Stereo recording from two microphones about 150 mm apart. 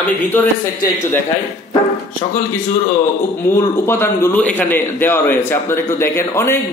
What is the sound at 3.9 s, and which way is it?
A man's voice, 15° left (ahead or behind).